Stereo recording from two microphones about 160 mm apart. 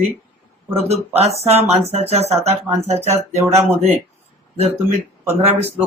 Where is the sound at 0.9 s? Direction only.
40° right (ahead or behind).